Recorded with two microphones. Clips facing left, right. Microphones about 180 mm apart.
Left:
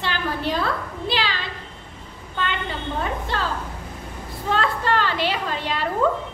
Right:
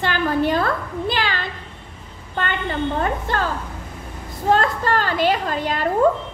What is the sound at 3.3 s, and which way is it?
A woman's voice, 50° right (ahead or behind).